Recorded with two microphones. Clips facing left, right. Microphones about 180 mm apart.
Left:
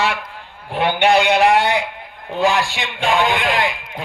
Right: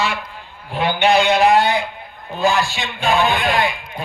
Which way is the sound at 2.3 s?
90° left.